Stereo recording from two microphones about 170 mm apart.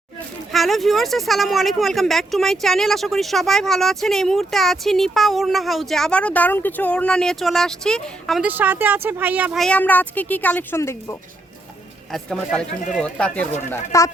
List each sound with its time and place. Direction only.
0.5 s speech: centre (ahead or behind)
8.4 s speech: 10° right (ahead or behind)
9.6 s speech: 5° left (ahead or behind)
12.1 s speech: centre (ahead or behind)
13.7 s speech: 20° left (ahead or behind)